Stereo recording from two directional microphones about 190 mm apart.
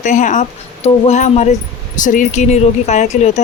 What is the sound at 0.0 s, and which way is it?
Speech, 40° left (ahead or behind).